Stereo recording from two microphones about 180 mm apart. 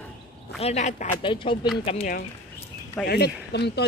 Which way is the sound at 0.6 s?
40° left (ahead or behind).